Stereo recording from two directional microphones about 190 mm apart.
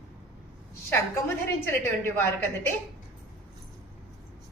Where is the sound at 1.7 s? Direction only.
10° left (ahead or behind).